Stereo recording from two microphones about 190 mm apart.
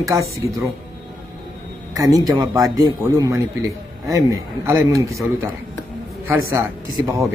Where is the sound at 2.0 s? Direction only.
20° right (ahead or behind).